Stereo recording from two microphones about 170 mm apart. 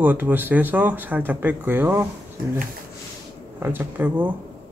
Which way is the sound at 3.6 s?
10° right (ahead or behind).